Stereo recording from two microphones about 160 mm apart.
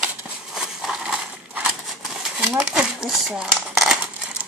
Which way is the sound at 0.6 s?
5° right (ahead or behind).